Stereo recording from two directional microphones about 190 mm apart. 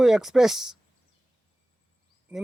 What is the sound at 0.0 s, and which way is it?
Speech, centre (ahead or behind).